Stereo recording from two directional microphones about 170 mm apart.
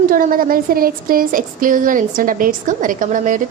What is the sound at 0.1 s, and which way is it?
A woman's voice, 55° right (ahead or behind).